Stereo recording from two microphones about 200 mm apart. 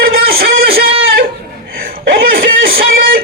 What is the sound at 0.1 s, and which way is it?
Music, 50° right (ahead or behind).